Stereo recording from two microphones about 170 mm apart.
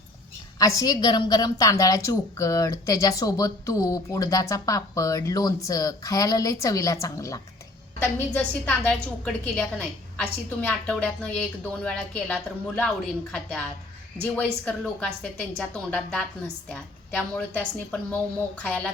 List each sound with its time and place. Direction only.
0.6 s a woman's voice: 20° left (ahead or behind)
14.3 s a woman's voice: 5° left (ahead or behind)